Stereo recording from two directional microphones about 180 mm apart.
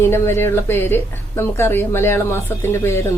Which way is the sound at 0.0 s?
15° left (ahead or behind).